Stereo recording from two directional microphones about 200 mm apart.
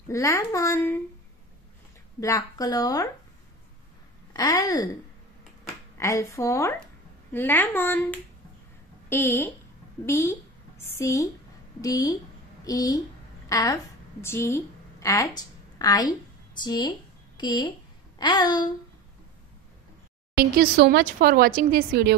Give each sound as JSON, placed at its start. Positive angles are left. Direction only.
{"t": 0.1, "sound": "speech", "side_deg": 15}
{"t": 2.1, "sound": "speech", "side_deg": 15}
{"t": 4.3, "sound": "speech", "side_deg": 20}
{"t": 5.9, "sound": "a woman's voice", "side_deg": 15}
{"t": 16.6, "sound": "a sound", "side_deg": 20}
{"t": 20.3, "sound": "speech", "side_deg": -50}